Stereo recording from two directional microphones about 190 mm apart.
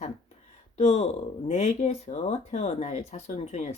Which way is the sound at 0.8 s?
35° left (ahead or behind).